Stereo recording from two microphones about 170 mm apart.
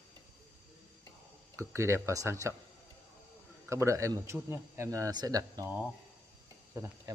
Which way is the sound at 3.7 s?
15° right (ahead or behind).